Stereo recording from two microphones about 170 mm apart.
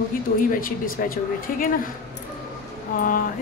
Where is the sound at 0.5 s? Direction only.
55° left (ahead or behind).